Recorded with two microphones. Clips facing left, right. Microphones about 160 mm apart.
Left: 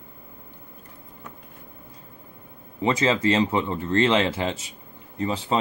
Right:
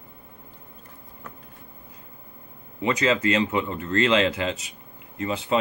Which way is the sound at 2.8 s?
30° left (ahead or behind).